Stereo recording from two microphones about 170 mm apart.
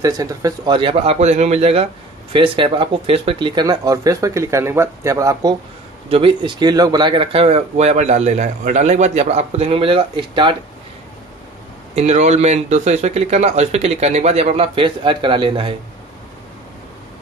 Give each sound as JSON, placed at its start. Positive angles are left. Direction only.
{"t": 0.0, "sound": "speech", "side_deg": -20}
{"t": 6.0, "sound": "speech", "side_deg": -30}
{"t": 11.9, "sound": "speech", "side_deg": -40}